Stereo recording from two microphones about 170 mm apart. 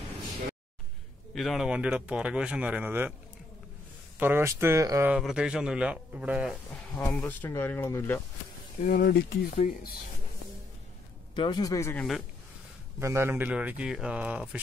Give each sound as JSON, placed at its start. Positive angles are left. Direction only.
{"t": 1.3, "sound": "speech", "side_deg": 0}
{"t": 4.2, "sound": "speech", "side_deg": -15}
{"t": 5.1, "sound": "speech", "side_deg": -5}
{"t": 7.0, "sound": "speech", "side_deg": 10}
{"t": 8.8, "sound": "speech", "side_deg": 60}
{"t": 11.3, "sound": "speech", "side_deg": 30}
{"t": 13.0, "sound": "speech", "side_deg": -15}